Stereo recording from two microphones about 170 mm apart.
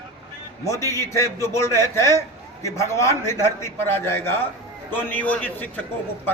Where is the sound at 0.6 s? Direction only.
15° left (ahead or behind).